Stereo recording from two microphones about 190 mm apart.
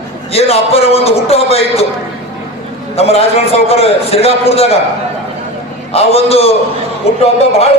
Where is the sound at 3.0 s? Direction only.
30° left (ahead or behind).